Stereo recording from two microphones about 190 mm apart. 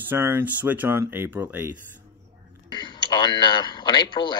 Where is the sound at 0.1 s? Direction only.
10° right (ahead or behind).